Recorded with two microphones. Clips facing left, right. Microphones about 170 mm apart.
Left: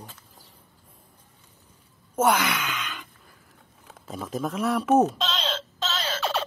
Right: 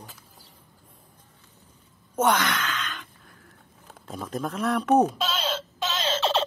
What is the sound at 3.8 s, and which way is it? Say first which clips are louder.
Speech: left 1 dB; centre (ahead or behind).